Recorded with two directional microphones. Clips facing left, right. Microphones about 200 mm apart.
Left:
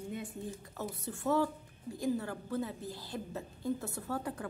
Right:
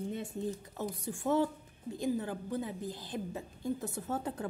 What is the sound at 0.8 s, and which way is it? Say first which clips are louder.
A woman's voice: right 1 dB; 15° right (ahead or behind).